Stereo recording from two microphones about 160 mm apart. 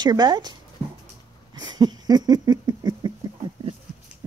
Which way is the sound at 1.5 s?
25° right (ahead or behind).